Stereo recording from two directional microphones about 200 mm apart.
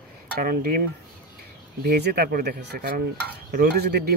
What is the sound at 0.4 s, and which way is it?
Speech, 50° right (ahead or behind).